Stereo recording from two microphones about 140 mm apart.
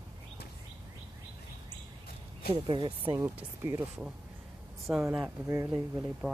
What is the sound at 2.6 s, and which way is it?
Speech, 35° right (ahead or behind).